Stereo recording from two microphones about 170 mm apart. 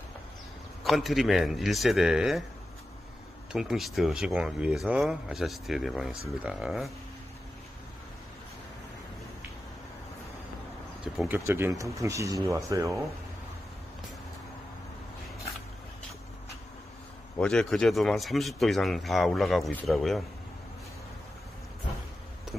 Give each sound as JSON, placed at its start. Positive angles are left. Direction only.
{"t": 0.8, "sound": "speech", "side_deg": 0}
{"t": 3.5, "sound": "speech", "side_deg": 0}
{"t": 11.1, "sound": "speech", "side_deg": -10}
{"t": 17.4, "sound": "speech", "side_deg": 5}